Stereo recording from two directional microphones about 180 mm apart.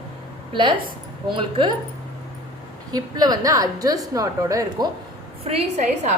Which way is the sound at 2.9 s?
20° right (ahead or behind).